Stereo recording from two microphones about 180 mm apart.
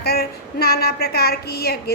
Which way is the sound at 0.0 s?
60° left (ahead or behind).